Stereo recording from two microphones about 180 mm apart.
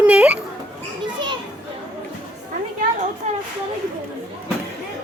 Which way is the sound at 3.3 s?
40° right (ahead or behind).